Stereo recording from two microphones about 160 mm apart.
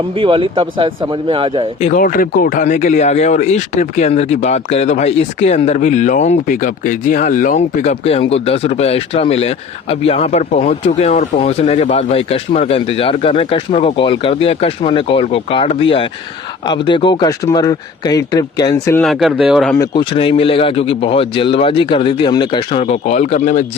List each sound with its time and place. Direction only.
0.2 s speech: 35° right (ahead or behind)
1.8 s speech: 55° left (ahead or behind); by 18.9 s 25° left (ahead or behind)
19.0 s speech: centre (ahead or behind)
19.8 s speech: 30° left (ahead or behind); by 23.6 s 50° left (ahead or behind)